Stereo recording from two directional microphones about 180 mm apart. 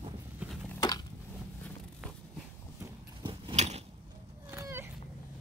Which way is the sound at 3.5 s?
40° right (ahead or behind).